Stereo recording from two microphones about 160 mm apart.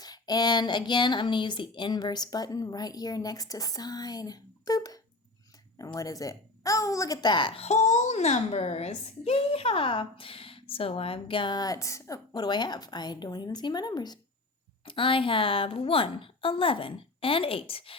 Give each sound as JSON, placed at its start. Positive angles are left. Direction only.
{"t": 0.0, "sound": "a woman's voice", "side_deg": 25}